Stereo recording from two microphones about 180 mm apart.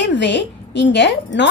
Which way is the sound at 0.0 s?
75° left (ahead or behind).